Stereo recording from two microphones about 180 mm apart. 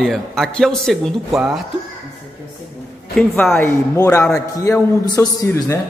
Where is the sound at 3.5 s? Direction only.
15° left (ahead or behind).